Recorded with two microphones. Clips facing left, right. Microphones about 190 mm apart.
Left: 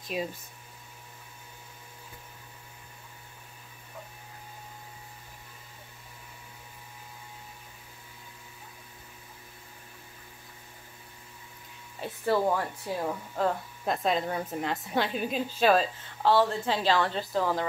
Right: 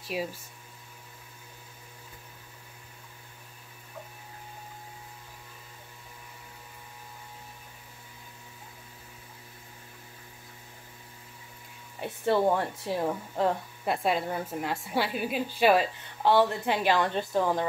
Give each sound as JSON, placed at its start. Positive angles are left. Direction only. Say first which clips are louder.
{"t": 0.0, "sound": "speech", "louder": "even", "side_deg": -10}
{"t": 12.0, "sound": "speech", "louder": "right 1 dB", "side_deg": -20}
{"t": 13.8, "sound": "a woman's voice", "louder": "even", "side_deg": -10}